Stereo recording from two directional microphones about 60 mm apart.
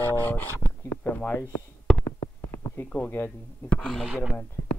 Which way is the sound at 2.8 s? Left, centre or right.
Left.